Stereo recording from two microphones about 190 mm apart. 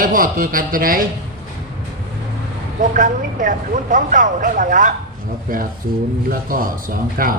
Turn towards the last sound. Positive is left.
turn(degrees=-50)  # may be behind; listen again after turning